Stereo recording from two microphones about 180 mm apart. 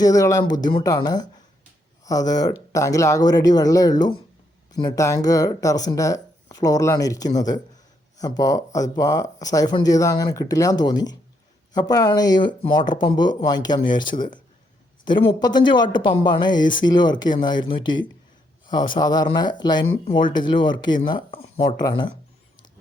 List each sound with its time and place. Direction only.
0.0 s speech: 20° left (ahead or behind)